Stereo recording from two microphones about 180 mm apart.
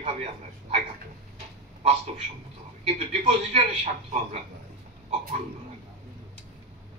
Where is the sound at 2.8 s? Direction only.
35° right (ahead or behind).